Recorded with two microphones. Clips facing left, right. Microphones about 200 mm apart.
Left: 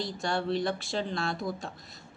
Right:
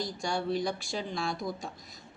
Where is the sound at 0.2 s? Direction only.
Centre (ahead or behind).